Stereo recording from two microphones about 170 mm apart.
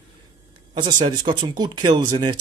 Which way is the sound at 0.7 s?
30° right (ahead or behind).